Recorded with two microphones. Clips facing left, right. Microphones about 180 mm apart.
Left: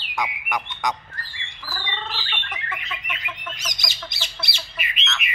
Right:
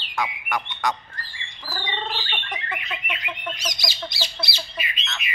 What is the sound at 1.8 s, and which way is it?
Bird, 30° right (ahead or behind).